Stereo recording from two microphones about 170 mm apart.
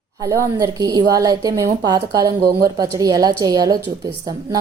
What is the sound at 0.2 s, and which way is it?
A woman's voice, 20° right (ahead or behind).